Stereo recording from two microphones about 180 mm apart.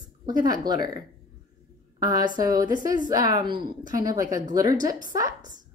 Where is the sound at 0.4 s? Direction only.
25° right (ahead or behind).